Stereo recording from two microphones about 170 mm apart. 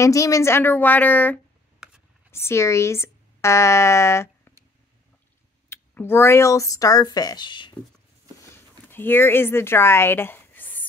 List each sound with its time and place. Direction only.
0.0 s a woman's voice: 20° left (ahead or behind)
5.7 s speech: 15° left (ahead or behind)
8.5 s a sound: 10° left (ahead or behind)